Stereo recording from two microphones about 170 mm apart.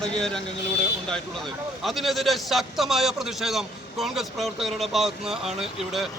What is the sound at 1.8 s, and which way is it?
A man's voice, centre (ahead or behind).